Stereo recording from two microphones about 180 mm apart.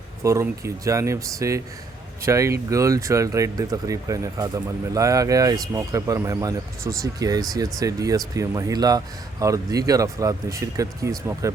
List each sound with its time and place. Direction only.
0.2 s speech: 15° right (ahead or behind)